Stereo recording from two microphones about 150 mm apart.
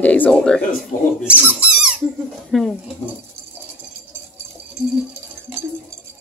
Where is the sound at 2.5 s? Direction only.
5° left (ahead or behind).